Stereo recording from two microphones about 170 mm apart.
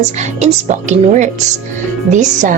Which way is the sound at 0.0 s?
45° right (ahead or behind).